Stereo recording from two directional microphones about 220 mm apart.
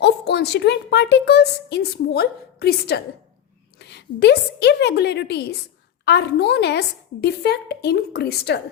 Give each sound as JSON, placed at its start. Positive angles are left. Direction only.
{"t": 0.0, "sound": "a woman's voice", "side_deg": 50}